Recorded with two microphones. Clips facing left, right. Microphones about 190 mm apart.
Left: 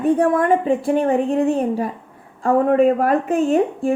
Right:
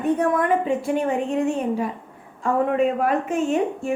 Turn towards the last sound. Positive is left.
turn(degrees=35)  # may be behind; listen again after turning